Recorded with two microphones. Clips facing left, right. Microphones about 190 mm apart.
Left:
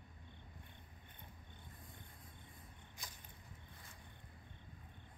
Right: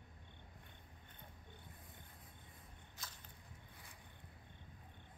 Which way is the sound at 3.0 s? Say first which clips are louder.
Even; 15° left (ahead or behind).